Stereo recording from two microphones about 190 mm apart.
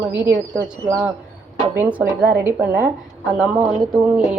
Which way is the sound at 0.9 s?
15° right (ahead or behind).